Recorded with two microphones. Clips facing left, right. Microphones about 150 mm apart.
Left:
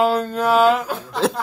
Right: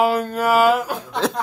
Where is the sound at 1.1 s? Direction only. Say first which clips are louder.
Left 1 dB; centre (ahead or behind).